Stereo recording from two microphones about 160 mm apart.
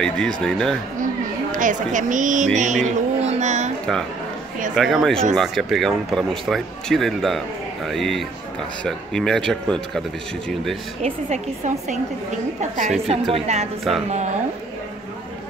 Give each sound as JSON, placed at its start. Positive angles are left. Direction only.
{"t": 0.0, "sound": "speech", "side_deg": 5}
{"t": 1.5, "sound": "speech", "side_deg": -55}
{"t": 4.7, "sound": "speech", "side_deg": 0}
{"t": 11.2, "sound": "a woman's voice", "side_deg": -45}
{"t": 13.0, "sound": "a woman's voice", "side_deg": -40}
{"t": 13.9, "sound": "speech", "side_deg": 0}